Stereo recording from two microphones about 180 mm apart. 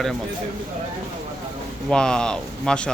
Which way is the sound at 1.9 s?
5° left (ahead or behind).